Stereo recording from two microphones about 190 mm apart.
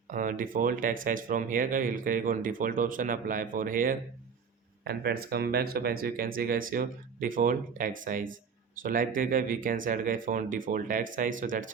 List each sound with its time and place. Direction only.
0.1 s speech: 45° right (ahead or behind)